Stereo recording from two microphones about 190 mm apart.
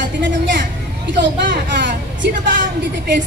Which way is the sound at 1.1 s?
70° right (ahead or behind).